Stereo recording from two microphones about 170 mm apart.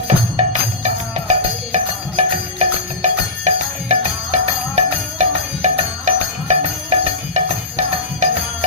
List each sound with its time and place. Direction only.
0.3 s music: 45° right (ahead or behind)